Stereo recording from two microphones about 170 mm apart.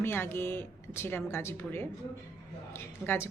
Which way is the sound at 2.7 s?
15° left (ahead or behind).